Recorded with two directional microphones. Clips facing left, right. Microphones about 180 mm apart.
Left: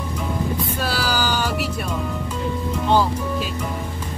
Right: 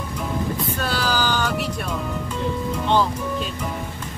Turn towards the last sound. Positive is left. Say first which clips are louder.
# left 1 dB
turn(degrees=10)  # may be behind; listen again after turning